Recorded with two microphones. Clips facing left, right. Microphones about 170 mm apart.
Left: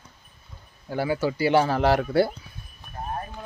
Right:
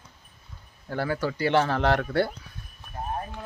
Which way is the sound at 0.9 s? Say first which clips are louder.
Left 3 dB; 10° left (ahead or behind).